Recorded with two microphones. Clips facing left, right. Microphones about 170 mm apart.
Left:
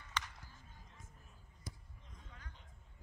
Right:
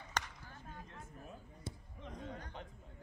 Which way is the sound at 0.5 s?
70° right (ahead or behind).